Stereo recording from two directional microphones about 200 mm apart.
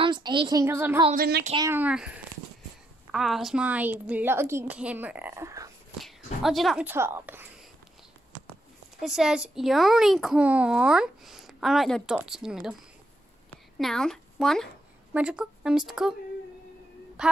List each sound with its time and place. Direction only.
0.0 s speech: 25° right (ahead or behind)
1.1 s speech: 50° right (ahead or behind)
1.6 s a woman's voice: 10° right (ahead or behind)
5.9 s a woman's voice: centre (ahead or behind)
9.0 s a child's voice: centre (ahead or behind)
13.7 s a woman's voice: centre (ahead or behind)
17.2 s speech: 5° right (ahead or behind)